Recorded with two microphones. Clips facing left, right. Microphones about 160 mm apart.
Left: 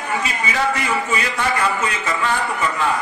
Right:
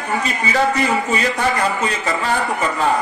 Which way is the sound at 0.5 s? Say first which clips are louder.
Right 4 dB; 35° right (ahead or behind).